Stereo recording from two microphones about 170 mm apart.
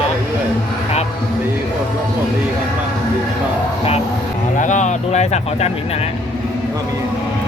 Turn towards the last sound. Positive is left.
turn(degrees=40)  # may be behind; listen again after turning